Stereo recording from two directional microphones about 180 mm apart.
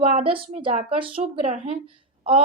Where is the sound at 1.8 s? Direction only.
30° right (ahead or behind).